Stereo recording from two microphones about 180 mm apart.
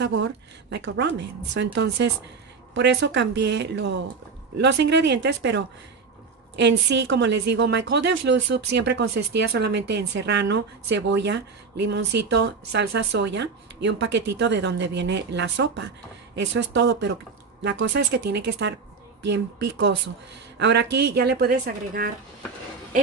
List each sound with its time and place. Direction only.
0.0 s a woman's voice: 80° right; by 22.1 s 55° right (ahead or behind)